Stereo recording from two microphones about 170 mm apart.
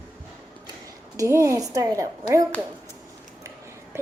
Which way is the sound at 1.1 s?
20° right (ahead or behind).